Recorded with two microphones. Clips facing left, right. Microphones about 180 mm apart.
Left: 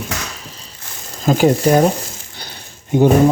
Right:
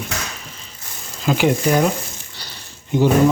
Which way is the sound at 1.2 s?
40° left (ahead or behind).